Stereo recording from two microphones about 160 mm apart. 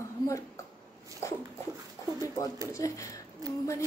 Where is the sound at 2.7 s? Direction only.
20° left (ahead or behind).